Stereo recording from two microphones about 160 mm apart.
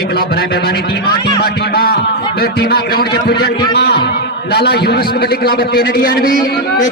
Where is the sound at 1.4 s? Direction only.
75° left (ahead or behind).